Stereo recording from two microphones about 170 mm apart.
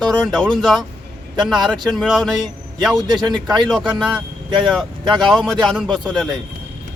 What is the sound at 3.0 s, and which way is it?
Speech, 25° right (ahead or behind).